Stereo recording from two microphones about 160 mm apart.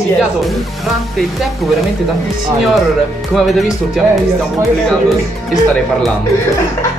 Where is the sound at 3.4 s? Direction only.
Centre (ahead or behind).